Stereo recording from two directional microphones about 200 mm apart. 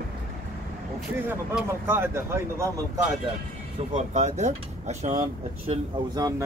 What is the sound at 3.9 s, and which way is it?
Speech, 35° right (ahead or behind).